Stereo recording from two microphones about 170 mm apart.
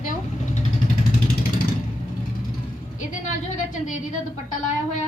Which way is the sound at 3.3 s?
50° left (ahead or behind).